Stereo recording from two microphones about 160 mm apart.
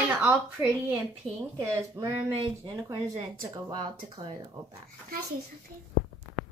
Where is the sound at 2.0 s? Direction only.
20° right (ahead or behind).